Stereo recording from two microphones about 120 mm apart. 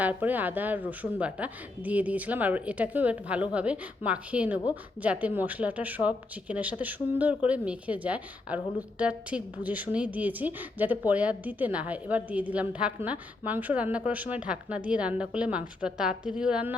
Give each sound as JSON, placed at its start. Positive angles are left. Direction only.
{"t": 0.0, "sound": "speech", "side_deg": -15}